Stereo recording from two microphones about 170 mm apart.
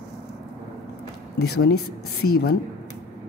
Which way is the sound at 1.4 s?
75° left (ahead or behind).